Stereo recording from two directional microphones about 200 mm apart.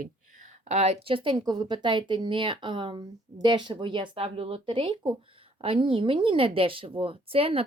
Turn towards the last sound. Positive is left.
turn(degrees=-30)  # may be behind; listen again after turning